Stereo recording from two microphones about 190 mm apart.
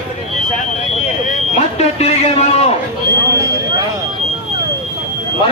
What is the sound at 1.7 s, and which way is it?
Speech, 30° left (ahead or behind).